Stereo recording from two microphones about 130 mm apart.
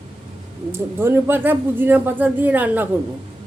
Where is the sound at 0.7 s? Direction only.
20° right (ahead or behind).